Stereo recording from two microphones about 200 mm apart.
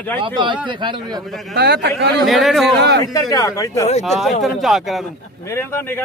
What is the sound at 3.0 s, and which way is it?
Speech, 15° left (ahead or behind).